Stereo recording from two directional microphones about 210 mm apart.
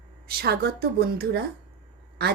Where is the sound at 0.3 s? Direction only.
45° right (ahead or behind).